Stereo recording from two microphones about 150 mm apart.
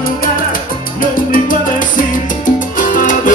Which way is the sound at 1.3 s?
65° left (ahead or behind).